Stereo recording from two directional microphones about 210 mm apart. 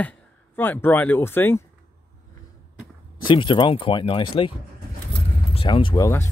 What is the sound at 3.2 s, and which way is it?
Speech, 25° left (ahead or behind).